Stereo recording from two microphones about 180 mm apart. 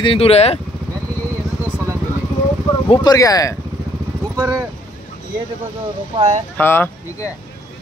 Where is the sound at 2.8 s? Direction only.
25° left (ahead or behind).